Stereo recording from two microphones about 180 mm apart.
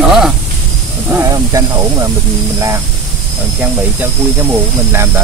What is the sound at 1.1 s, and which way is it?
Speech, 15° right (ahead or behind).